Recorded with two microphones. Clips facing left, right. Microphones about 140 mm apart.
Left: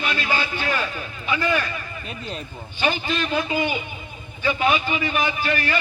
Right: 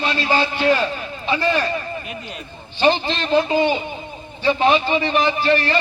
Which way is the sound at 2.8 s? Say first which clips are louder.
Right 5 dB; 30° right (ahead or behind).